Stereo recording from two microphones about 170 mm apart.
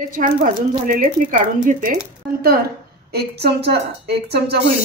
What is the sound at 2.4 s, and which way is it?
A woman's voice, 65° right (ahead or behind).